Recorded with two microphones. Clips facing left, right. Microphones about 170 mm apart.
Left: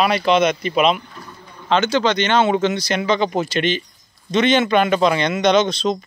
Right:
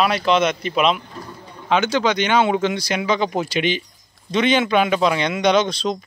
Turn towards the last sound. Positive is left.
turn(degrees=-10)  # may be behind; listen again after turning